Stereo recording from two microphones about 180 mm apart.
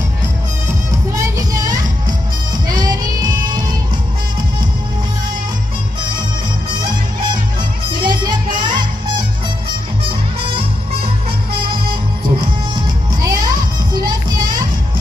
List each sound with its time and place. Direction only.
1.1 s music: 20° right (ahead or behind)
8.0 s music: 25° right (ahead or behind)
11.7 s music: 25° right (ahead or behind)